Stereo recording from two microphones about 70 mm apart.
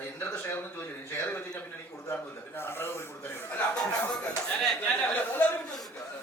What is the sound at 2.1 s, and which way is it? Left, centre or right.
Speech, left.